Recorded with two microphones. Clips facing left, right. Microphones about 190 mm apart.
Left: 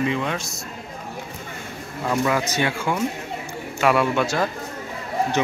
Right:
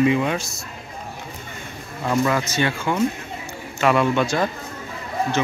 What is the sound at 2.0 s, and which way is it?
A man's voice, 5° left (ahead or behind).